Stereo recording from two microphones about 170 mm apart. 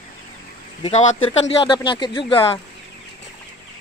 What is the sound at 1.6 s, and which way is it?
Speech, 30° left (ahead or behind).